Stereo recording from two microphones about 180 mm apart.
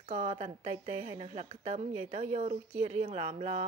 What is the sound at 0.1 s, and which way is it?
A woman's voice, 40° right (ahead or behind).